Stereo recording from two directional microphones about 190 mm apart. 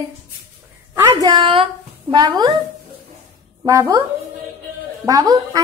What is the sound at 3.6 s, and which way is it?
Speech, 15° right (ahead or behind).